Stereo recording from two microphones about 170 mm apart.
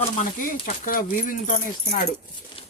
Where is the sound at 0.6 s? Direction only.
55° left (ahead or behind).